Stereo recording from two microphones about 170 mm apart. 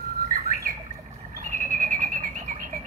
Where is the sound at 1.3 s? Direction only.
50° right (ahead or behind).